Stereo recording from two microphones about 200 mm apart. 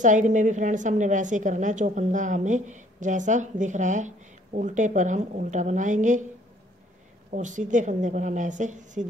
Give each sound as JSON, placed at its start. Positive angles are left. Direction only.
{"t": 0.0, "sound": "a woman's voice", "side_deg": -40}
{"t": 7.2, "sound": "a woman's voice", "side_deg": -40}